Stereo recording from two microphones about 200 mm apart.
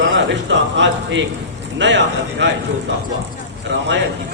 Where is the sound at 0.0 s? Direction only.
65° right (ahead or behind).